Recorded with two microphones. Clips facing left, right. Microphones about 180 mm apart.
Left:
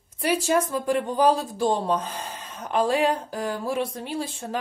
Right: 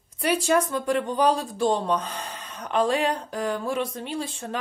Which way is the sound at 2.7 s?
5° left (ahead or behind).